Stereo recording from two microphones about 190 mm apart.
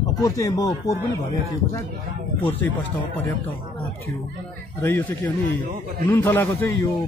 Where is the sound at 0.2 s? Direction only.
20° left (ahead or behind).